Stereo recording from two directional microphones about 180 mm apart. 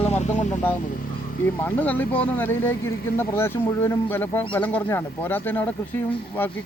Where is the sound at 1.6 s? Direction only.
10° left (ahead or behind).